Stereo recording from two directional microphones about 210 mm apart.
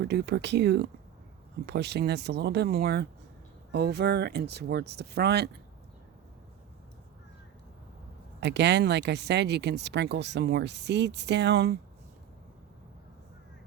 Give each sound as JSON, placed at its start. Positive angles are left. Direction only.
{"t": 0.0, "sound": "speech", "side_deg": -55}
{"t": 8.4, "sound": "speech", "side_deg": -55}